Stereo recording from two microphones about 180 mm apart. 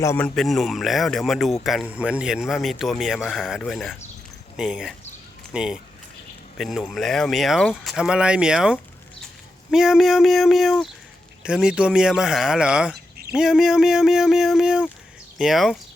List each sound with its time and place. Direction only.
0.0 s a man's voice: 15° left (ahead or behind)
0.3 s speech: centre (ahead or behind)